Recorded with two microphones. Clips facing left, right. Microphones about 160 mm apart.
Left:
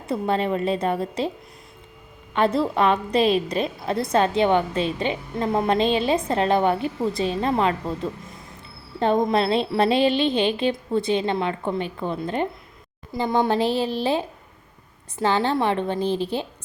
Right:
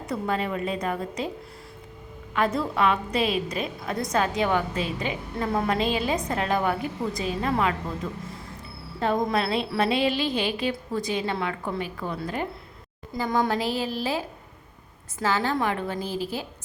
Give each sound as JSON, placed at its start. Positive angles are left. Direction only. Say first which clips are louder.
{"t": 0.1, "sound": "a woman's voice", "louder": "left 5 dB", "side_deg": 25}
{"t": 2.3, "sound": "a woman's voice", "louder": "left 4 dB", "side_deg": 30}
{"t": 9.0, "sound": "a woman's voice", "louder": "left 4 dB", "side_deg": 30}